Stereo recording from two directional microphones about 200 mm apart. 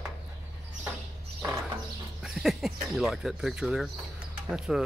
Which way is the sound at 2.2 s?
Centre (ahead or behind).